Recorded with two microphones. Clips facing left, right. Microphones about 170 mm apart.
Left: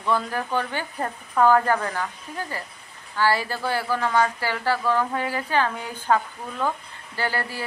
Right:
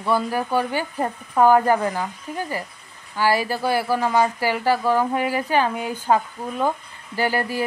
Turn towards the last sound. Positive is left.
turn(degrees=-15)  # may be behind; listen again after turning